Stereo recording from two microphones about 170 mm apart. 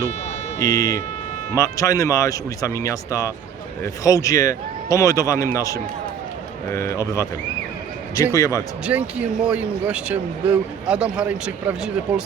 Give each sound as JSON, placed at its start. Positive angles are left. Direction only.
{"t": 0.6, "sound": "speech", "side_deg": 20}
{"t": 8.9, "sound": "speech", "side_deg": -10}